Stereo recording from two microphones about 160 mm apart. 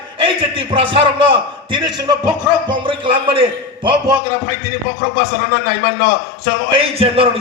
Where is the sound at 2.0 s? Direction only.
30° right (ahead or behind).